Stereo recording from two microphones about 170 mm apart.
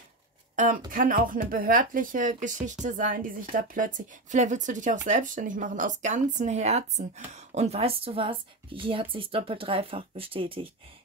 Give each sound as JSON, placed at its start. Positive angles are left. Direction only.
{"t": 0.6, "sound": "a woman's voice", "side_deg": -50}